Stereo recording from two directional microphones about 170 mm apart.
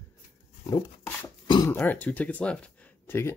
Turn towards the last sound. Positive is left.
turn(degrees=15)  # may be behind; listen again after turning